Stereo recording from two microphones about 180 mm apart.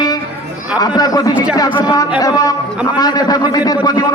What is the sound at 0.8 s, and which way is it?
A man's voice, 20° left (ahead or behind).